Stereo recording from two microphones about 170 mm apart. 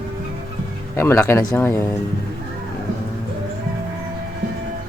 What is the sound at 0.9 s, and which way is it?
Speech, 15° left (ahead or behind).